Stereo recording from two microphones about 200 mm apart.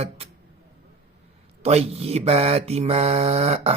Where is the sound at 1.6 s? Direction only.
30° right (ahead or behind).